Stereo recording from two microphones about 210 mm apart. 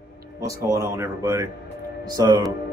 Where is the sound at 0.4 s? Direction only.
15° right (ahead or behind).